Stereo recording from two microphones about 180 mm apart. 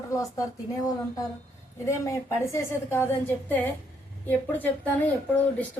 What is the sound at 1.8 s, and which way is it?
Speech, 15° left (ahead or behind).